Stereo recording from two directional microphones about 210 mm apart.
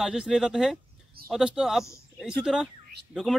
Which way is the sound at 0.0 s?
5° right (ahead or behind).